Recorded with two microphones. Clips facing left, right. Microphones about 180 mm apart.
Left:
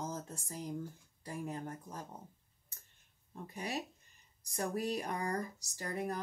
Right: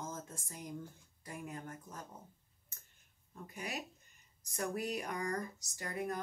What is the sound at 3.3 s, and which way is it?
Speech, 35° left (ahead or behind).